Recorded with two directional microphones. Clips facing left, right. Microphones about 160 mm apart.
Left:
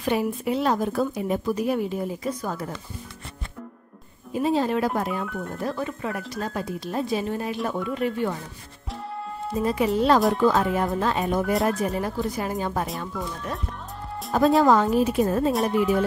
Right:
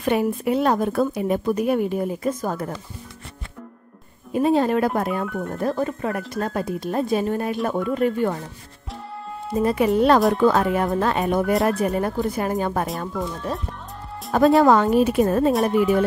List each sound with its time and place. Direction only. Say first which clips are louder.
0.0 s a woman's voice: right 3 dB; 55° right (ahead or behind)
4.3 s a woman's voice: right 4 dB; 55° right (ahead or behind)
5.6 s speech: right 6 dB; 45° right (ahead or behind)
9.6 s a woman's voice: right 4 dB; 60° right (ahead or behind)
14.3 s a woman's voice: right 3 dB; 65° right (ahead or behind)
15.7 s speech: right 3 dB; centre (ahead or behind)